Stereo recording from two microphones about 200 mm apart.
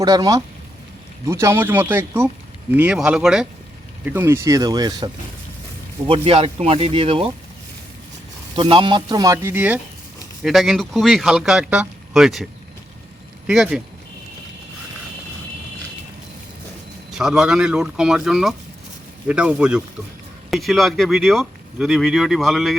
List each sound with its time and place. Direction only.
0.0 s speech: 20° right (ahead or behind)
8.5 s speech: 25° right (ahead or behind); by 12.5 s centre (ahead or behind)
13.5 s speech: 5° right (ahead or behind)
17.1 s speech: centre (ahead or behind)